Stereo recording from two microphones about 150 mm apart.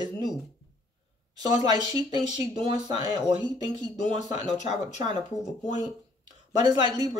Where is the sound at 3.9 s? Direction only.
50° left (ahead or behind).